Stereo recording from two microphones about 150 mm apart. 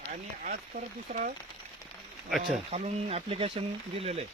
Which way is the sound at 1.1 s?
50° right (ahead or behind).